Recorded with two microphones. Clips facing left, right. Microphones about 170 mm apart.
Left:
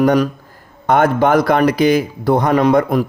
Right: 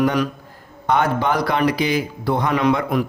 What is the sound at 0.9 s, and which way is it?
A man's voice, 50° left (ahead or behind).